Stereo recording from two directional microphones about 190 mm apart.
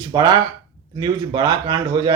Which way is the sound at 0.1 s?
20° right (ahead or behind).